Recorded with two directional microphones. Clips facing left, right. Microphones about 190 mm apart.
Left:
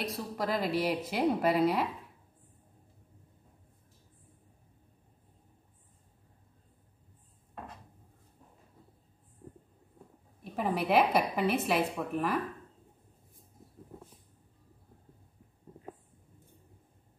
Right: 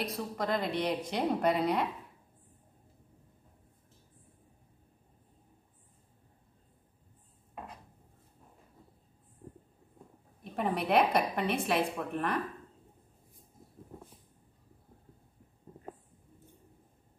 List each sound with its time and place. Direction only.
0.0 s a woman's voice: centre (ahead or behind)
10.4 s a woman's voice: centre (ahead or behind)